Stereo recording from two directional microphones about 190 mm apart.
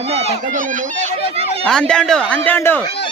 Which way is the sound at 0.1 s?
35° right (ahead or behind).